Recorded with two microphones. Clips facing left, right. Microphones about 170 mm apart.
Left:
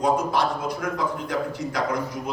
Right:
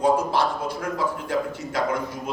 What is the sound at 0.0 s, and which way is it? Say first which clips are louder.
A man's voice: right 1 dB; 30° right (ahead or behind).